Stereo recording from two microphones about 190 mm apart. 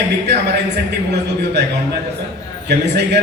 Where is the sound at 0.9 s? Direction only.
60° right (ahead or behind).